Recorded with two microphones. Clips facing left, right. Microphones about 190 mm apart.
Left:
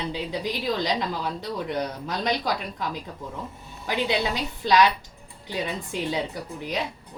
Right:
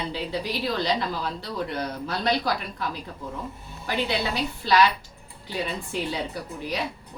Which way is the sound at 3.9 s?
15° left (ahead or behind).